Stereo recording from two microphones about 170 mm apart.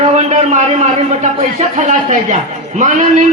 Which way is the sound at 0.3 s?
45° right (ahead or behind).